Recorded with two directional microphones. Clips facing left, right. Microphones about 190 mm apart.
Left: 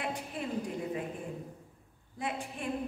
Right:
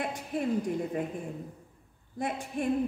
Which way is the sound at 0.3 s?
45° right (ahead or behind).